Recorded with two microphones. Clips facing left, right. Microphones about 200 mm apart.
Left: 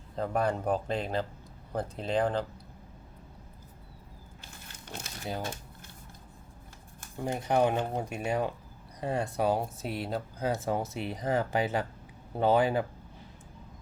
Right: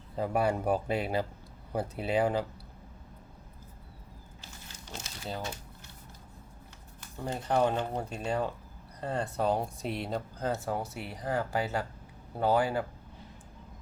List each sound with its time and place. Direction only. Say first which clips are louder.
0.2 s speech: right 1 dB; 10° right (ahead or behind)
4.4 s a sound: even; 55° left (ahead or behind)
7.3 s speech: left 1 dB; 15° left (ahead or behind)